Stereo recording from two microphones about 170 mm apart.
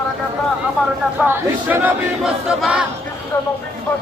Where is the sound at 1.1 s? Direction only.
10° right (ahead or behind).